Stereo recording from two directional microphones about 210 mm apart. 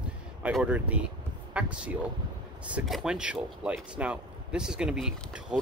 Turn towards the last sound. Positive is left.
turn(degrees=0)  # may be behind; listen again after turning